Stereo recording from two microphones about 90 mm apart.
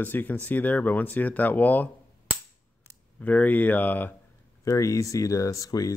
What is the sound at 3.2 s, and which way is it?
Speech, 20° left (ahead or behind).